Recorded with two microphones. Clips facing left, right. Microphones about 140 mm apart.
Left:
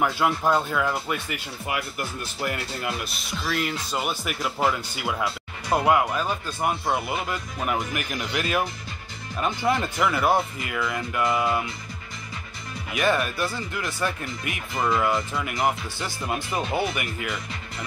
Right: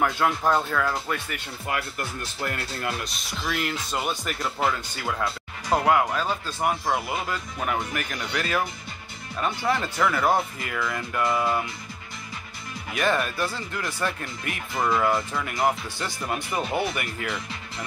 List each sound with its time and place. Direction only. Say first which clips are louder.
0.0 s speech: even; 5° left (ahead or behind)
12.9 s speech: left 1 dB; 5° left (ahead or behind)
14.8 s speech: even; centre (ahead or behind)
16.7 s speech: left 1 dB; 15° left (ahead or behind)